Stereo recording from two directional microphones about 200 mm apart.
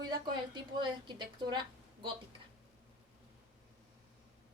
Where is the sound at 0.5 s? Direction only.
25° right (ahead or behind).